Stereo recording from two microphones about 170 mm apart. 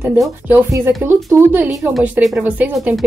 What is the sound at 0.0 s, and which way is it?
Speech, 15° right (ahead or behind).